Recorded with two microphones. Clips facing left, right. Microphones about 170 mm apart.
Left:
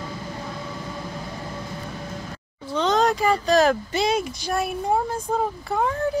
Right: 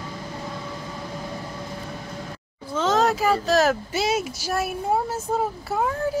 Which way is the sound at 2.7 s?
5° right (ahead or behind).